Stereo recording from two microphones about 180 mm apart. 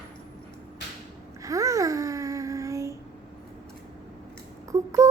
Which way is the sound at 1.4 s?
20° right (ahead or behind).